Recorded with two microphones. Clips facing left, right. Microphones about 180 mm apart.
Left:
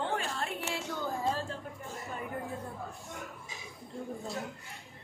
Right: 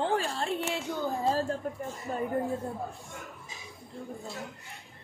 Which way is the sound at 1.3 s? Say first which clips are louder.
Right 6 dB; 40° right (ahead or behind).